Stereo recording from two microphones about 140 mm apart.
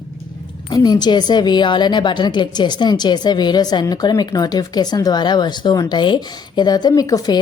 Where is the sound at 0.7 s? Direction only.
30° left (ahead or behind).